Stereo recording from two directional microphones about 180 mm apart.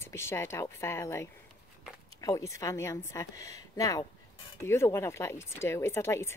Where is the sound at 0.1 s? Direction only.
15° left (ahead or behind).